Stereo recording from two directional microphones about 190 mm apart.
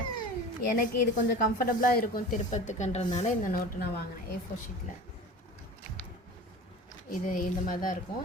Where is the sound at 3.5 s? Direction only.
55° left (ahead or behind).